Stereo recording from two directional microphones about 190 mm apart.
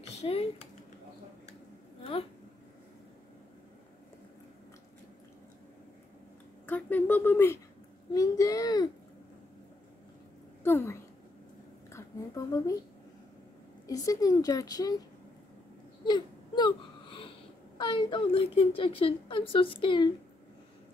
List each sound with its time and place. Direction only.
0.2 s typing: 30° left (ahead or behind)
6.6 s a woman's voice: 10° left (ahead or behind)
10.6 s a sound: 10° left (ahead or behind)
13.8 s speech: 20° left (ahead or behind)
16.1 s wail: 25° left (ahead or behind)
17.7 s speech: 25° left (ahead or behind)